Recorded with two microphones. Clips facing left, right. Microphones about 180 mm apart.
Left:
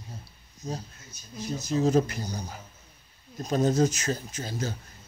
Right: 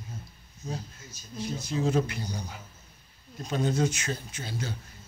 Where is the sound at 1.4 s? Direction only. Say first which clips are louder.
Left 3 dB; 40° left (ahead or behind).